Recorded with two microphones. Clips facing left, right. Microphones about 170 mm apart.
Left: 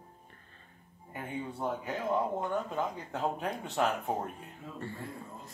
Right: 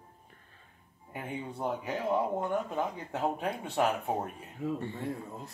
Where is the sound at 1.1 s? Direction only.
15° right (ahead or behind).